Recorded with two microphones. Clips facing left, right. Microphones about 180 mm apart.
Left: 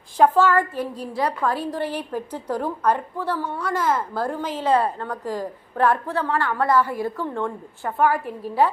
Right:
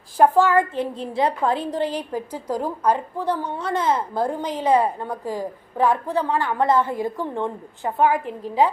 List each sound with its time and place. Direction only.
0.2 s a woman's voice: 15° right (ahead or behind)